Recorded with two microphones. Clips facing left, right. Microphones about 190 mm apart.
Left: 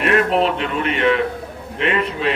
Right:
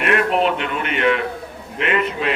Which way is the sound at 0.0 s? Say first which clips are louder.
Left 2 dB; 35° left (ahead or behind).